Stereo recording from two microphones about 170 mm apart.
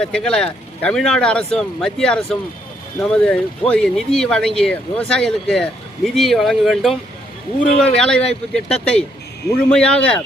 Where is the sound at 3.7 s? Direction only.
5° left (ahead or behind).